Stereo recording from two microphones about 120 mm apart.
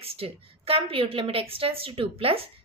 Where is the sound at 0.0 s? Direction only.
55° right (ahead or behind).